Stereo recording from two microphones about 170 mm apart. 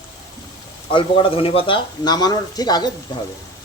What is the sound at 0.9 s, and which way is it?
Speech, 30° left (ahead or behind).